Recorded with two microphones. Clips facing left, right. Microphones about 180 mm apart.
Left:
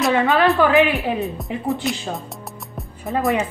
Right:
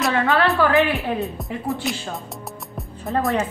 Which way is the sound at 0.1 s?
15° left (ahead or behind).